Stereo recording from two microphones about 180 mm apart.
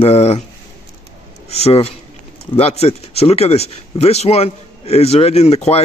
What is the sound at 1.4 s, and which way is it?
Speech, 35° left (ahead or behind).